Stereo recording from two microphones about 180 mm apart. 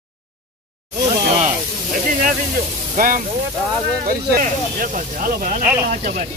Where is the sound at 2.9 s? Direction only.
50° right (ahead or behind).